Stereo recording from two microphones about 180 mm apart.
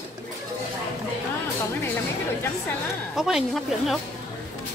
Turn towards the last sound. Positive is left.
turn(degrees=0)  # may be behind; listen again after turning